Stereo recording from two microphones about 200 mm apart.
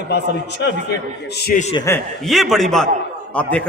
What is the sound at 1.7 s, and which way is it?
Speech, 15° left (ahead or behind).